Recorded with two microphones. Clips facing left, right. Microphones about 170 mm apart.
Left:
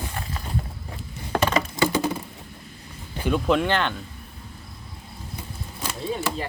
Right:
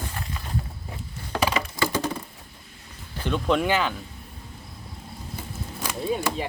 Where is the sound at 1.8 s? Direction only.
10° left (ahead or behind).